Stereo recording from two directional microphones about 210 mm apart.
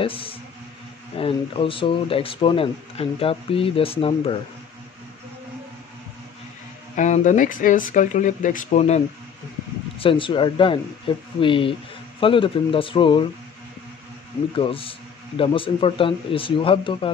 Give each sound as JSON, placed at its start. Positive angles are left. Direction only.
{"t": 0.0, "sound": "speech", "side_deg": 25}
{"t": 7.0, "sound": "speech", "side_deg": 35}
{"t": 14.5, "sound": "speech", "side_deg": 25}